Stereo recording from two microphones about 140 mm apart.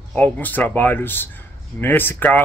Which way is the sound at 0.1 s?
10° left (ahead or behind).